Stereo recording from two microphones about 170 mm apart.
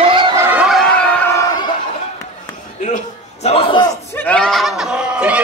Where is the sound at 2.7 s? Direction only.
45° left (ahead or behind); by 3.9 s 30° left (ahead or behind).